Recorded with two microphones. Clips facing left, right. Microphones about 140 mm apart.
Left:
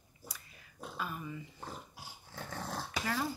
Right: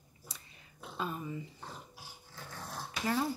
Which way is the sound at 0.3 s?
30° right (ahead or behind).